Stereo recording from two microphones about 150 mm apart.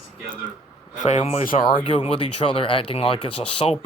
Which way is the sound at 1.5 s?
35° left (ahead or behind).